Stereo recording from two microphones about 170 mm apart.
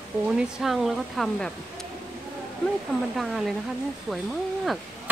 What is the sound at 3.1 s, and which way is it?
Speech, centre (ahead or behind).